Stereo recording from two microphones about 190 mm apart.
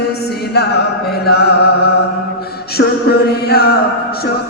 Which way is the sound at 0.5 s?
60° left (ahead or behind).